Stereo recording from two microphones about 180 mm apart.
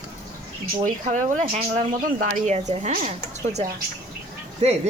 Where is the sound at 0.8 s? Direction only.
45° right (ahead or behind).